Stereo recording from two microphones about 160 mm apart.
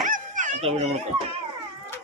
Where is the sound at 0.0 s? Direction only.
55° right (ahead or behind).